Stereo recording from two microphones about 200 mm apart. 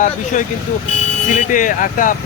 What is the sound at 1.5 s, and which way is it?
Speech, 40° left (ahead or behind).